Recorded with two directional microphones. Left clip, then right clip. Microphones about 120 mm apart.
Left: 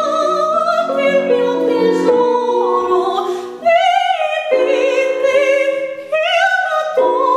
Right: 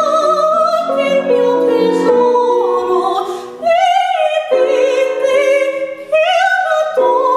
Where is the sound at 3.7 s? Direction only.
Centre (ahead or behind).